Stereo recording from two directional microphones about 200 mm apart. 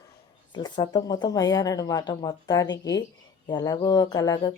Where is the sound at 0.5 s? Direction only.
20° left (ahead or behind).